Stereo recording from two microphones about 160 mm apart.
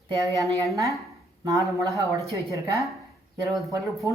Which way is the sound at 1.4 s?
20° right (ahead or behind).